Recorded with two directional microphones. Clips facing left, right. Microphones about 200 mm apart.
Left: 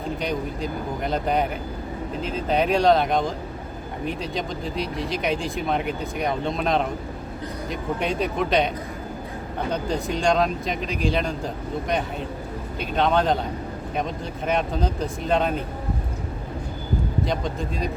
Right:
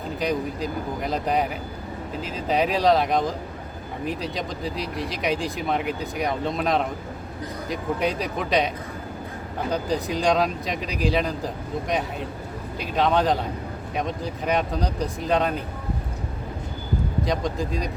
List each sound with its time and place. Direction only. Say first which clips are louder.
0.2 s speech: right 1 dB; centre (ahead or behind)
17.2 s speech: right 1 dB; centre (ahead or behind)